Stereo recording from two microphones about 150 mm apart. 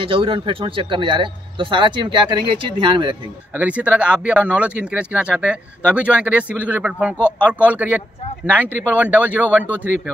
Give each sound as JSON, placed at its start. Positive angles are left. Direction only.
{"t": 0.0, "sound": "a man's voice", "side_deg": -35}
{"t": 3.5, "sound": "speech", "side_deg": -10}
{"t": 7.2, "sound": "speech", "side_deg": 15}
{"t": 7.6, "sound": "speech", "side_deg": -10}